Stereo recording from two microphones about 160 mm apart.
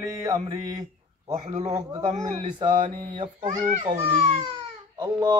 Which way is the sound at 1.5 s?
45° right (ahead or behind).